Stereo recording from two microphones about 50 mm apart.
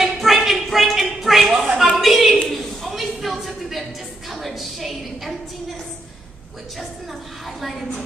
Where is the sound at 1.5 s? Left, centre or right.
Centre.